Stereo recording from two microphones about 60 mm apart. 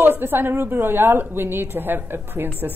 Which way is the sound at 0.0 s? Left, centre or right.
Right.